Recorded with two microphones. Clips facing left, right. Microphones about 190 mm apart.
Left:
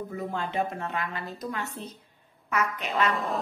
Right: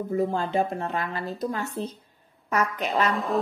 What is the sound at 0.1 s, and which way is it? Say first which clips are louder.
A woman's voice: right 9 dB; 35° right (ahead or behind).